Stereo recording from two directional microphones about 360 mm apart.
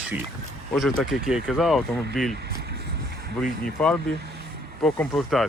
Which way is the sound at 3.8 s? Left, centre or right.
Centre.